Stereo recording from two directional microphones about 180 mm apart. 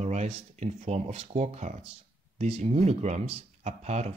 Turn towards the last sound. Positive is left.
turn(degrees=-40)  # may be behind; listen again after turning